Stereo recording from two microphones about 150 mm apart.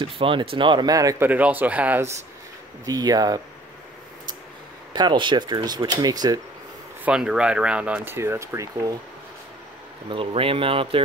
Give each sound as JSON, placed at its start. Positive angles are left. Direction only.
{"t": 0.2, "sound": "speech", "side_deg": -35}
{"t": 1.3, "sound": "speech", "side_deg": -10}
{"t": 2.8, "sound": "speech", "side_deg": -25}
{"t": 4.9, "sound": "speech", "side_deg": -30}
{"t": 7.1, "sound": "speech", "side_deg": -5}
{"t": 10.0, "sound": "speech", "side_deg": -35}